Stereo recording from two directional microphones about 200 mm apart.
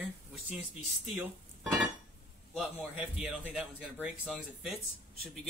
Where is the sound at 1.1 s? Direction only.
Centre (ahead or behind).